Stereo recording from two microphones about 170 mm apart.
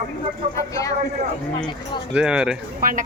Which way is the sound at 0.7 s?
20° left (ahead or behind).